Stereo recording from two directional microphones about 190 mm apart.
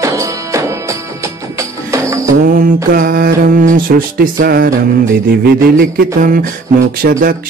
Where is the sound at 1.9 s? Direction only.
15° right (ahead or behind).